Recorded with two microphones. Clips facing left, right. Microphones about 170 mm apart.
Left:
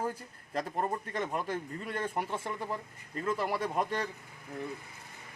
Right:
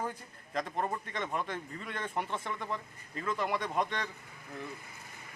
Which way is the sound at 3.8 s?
35° left (ahead or behind).